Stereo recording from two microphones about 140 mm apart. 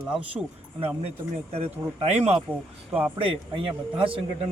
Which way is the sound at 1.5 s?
50° right (ahead or behind).